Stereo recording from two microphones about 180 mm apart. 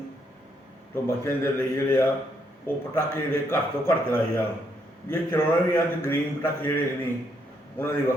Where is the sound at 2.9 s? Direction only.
15° left (ahead or behind).